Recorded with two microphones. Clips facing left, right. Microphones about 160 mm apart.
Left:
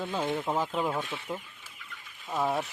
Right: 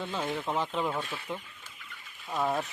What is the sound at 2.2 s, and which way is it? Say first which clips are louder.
Speech: left 1 dB; centre (ahead or behind).